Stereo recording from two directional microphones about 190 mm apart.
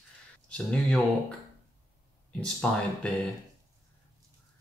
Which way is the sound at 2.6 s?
5° left (ahead or behind).